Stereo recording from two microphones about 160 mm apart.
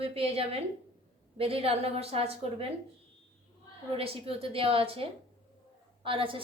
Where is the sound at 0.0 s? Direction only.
40° right (ahead or behind).